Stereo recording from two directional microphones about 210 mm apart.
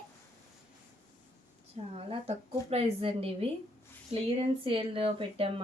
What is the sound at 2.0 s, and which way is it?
Speech, 30° right (ahead or behind).